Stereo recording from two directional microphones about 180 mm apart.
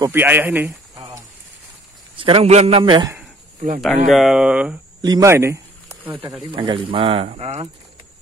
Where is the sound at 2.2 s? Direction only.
30° right (ahead or behind).